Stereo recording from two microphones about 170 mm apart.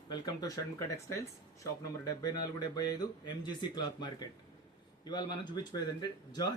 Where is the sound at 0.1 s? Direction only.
25° left (ahead or behind).